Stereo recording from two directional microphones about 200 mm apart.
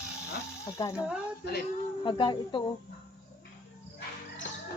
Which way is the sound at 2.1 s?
25° left (ahead or behind).